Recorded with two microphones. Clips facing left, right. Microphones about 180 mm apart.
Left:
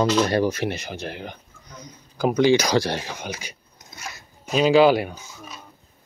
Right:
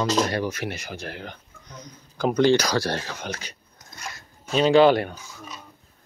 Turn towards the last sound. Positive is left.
turn(degrees=5)  # may be behind; listen again after turning